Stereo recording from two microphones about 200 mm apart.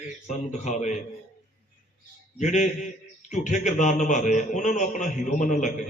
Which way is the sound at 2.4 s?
35° left (ahead or behind).